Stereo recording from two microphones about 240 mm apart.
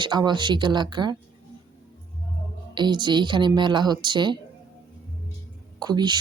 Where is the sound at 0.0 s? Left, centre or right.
Centre.